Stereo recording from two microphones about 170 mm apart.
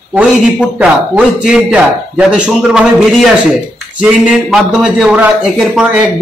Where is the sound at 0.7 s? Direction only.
5° right (ahead or behind).